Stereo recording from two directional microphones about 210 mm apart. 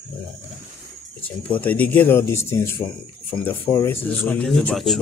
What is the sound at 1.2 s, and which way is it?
Speech, 10° left (ahead or behind).